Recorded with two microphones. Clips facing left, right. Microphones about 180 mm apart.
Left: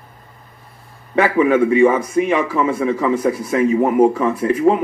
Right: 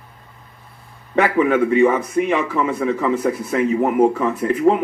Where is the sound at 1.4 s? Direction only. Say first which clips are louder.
Left 3 dB; 10° left (ahead or behind).